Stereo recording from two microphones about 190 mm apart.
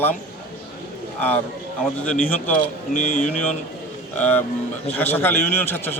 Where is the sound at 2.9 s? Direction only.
40° left (ahead or behind).